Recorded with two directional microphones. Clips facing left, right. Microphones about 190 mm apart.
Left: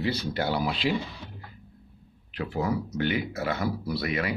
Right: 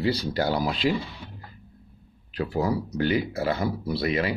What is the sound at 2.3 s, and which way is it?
Speech, 35° right (ahead or behind).